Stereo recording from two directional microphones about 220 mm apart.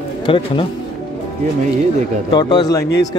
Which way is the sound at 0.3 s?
25° left (ahead or behind).